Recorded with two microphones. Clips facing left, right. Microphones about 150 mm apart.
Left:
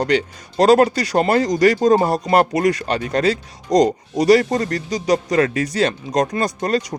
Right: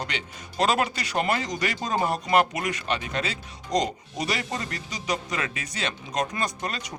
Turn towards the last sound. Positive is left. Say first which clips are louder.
# left 11 dB
turn(degrees=35)  # may be behind; listen again after turning